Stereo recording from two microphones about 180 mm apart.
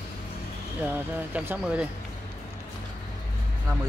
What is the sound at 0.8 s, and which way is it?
Speech, 10° right (ahead or behind).